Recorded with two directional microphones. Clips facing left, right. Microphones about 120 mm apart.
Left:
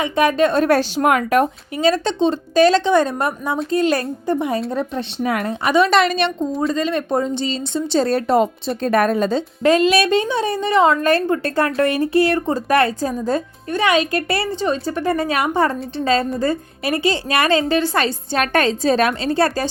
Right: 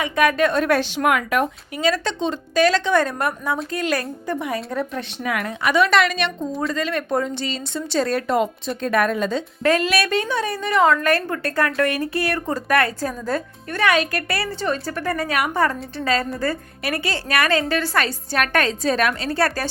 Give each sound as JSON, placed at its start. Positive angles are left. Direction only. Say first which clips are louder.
{"t": 0.0, "sound": "a woman's voice", "louder": "left 2 dB", "side_deg": 25}
{"t": 9.6, "sound": "a woman's voice", "louder": "left 5 dB", "side_deg": 25}